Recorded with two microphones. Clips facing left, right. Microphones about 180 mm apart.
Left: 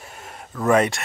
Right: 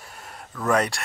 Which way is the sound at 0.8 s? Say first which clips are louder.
Left 4 dB; 20° left (ahead or behind).